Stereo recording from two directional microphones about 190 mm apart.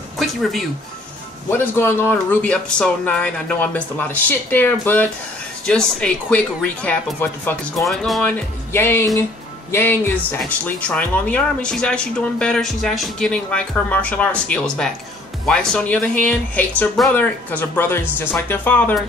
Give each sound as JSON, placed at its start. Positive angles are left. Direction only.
{"t": 0.2, "sound": "speech", "side_deg": 0}
{"t": 1.5, "sound": "speech", "side_deg": 10}